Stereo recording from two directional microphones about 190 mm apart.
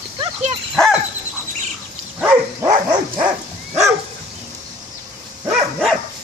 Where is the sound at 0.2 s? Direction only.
35° right (ahead or behind).